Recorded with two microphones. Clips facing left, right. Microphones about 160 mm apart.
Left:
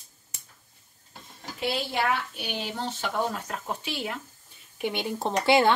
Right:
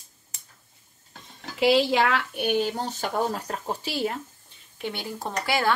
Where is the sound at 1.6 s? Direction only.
90° right.